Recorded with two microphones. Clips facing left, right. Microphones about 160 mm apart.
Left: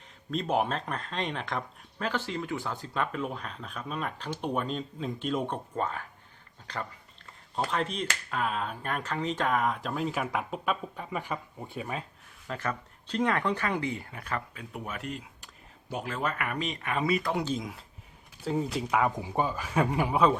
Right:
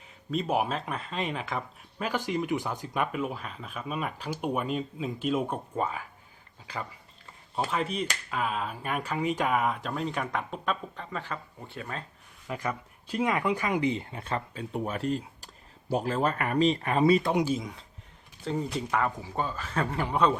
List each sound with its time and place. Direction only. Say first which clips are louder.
0.3 s speech: even; 5° right (ahead or behind); by 12.0 s 10° left (ahead or behind)
12.5 s speech: right 1 dB; 15° right (ahead or behind); by 17.3 s 30° right (ahead or behind)
17.3 s speech: right 4 dB; 10° right (ahead or behind)
17.6 s a man's voice: even; 5° left (ahead or behind)